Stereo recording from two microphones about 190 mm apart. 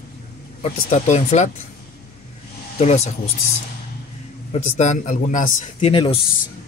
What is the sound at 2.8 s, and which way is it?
Speech, 35° left (ahead or behind).